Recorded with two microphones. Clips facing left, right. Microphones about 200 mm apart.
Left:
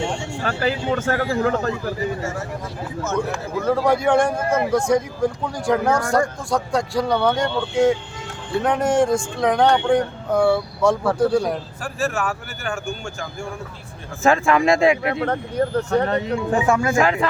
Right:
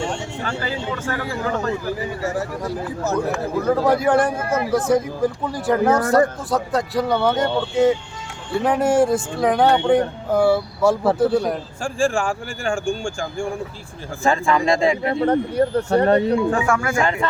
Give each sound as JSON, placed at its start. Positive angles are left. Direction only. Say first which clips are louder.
{"t": 0.9, "sound": "a man's voice", "louder": "left 5 dB", "side_deg": 45}
{"t": 3.3, "sound": "speech", "louder": "right 2 dB", "side_deg": -5}
{"t": 11.8, "sound": "speech", "louder": "right 6 dB", "side_deg": -30}
{"t": 14.3, "sound": "speech", "louder": "left 2 dB", "side_deg": 5}
{"t": 15.3, "sound": "speech", "louder": "right 3 dB", "side_deg": -10}
{"t": 16.0, "sound": "speech", "louder": "right 6 dB", "side_deg": -35}
{"t": 16.5, "sound": "speech", "louder": "left 1 dB", "side_deg": 20}
{"t": 17.0, "sound": "speech", "louder": "left 2 dB", "side_deg": 5}